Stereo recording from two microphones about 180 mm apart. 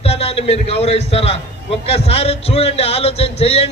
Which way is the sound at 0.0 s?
35° left (ahead or behind).